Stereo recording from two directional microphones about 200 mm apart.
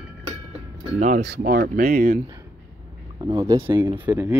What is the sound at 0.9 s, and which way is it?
Speech, 40° right (ahead or behind).